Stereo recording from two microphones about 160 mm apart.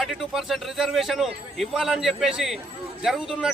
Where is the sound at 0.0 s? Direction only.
Centre (ahead or behind).